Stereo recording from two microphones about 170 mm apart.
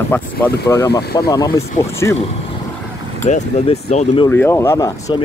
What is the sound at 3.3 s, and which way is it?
Speech, 40° left (ahead or behind).